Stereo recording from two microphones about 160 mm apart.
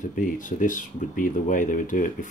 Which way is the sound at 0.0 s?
55° left (ahead or behind).